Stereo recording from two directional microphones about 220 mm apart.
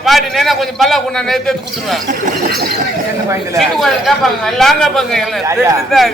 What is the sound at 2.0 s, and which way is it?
Speech, 40° right (ahead or behind).